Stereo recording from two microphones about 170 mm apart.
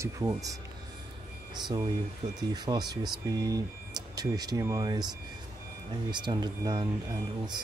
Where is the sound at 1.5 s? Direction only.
25° right (ahead or behind).